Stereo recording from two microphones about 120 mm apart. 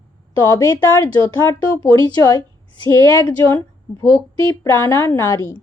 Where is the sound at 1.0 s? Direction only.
25° left (ahead or behind).